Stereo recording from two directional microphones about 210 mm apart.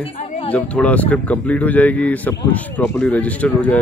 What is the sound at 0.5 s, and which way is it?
Speech, 5° left (ahead or behind).